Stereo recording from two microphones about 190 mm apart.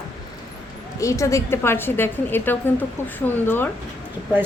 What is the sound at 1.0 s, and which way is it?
A woman's voice, 15° left (ahead or behind).